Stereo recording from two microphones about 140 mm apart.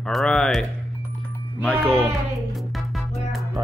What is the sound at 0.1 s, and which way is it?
Speech, 5° left (ahead or behind).